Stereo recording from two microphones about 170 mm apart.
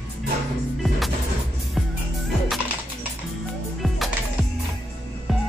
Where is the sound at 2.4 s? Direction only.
10° right (ahead or behind).